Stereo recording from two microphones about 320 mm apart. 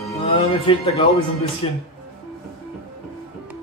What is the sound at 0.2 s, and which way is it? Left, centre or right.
A man's voice, centre.